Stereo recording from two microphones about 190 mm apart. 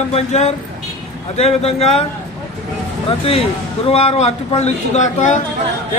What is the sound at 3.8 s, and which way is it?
Speech, 30° left (ahead or behind).